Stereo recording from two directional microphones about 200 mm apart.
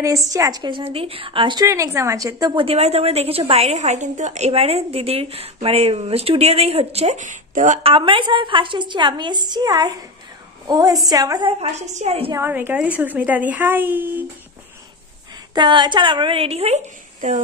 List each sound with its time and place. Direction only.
0.3 s a woman's voice: 20° right (ahead or behind)
11.6 s a woman's voice: 35° right (ahead or behind)
12.3 s a woman's voice: 10° right (ahead or behind)
15.5 s a woman's voice: 20° right (ahead or behind)